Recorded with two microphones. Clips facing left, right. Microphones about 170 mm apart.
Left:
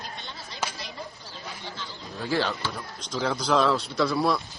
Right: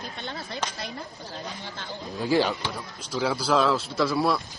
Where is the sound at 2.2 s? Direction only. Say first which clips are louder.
Right 4 dB; 15° right (ahead or behind).